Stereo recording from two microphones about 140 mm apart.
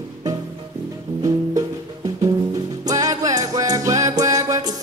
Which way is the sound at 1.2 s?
25° right (ahead or behind).